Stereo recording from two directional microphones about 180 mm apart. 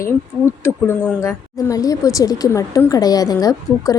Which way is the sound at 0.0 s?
15° left (ahead or behind).